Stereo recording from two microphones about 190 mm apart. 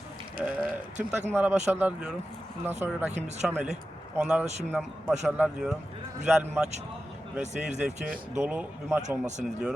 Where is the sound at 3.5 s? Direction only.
10° right (ahead or behind).